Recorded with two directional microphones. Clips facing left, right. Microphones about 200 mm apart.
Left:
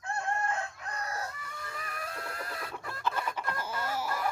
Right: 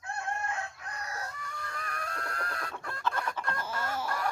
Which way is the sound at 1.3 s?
5° left (ahead or behind).